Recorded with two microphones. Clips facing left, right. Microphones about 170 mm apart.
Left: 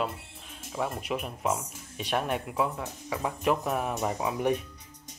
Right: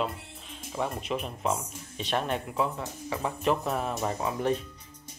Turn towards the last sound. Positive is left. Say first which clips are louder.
# left 1 dB
turn(degrees=15)  # may be behind; listen again after turning